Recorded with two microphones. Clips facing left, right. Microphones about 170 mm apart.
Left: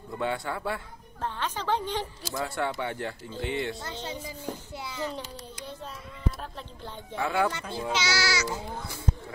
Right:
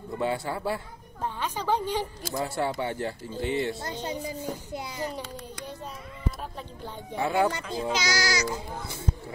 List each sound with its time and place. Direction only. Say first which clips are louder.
0.2 s speech: right 2 dB; 30° right (ahead or behind)
1.2 s a woman's voice: right 1 dB; 10° right (ahead or behind)
2.3 s speech: right 2 dB; 25° right (ahead or behind)
7.2 s speech: right 2 dB; 30° right (ahead or behind)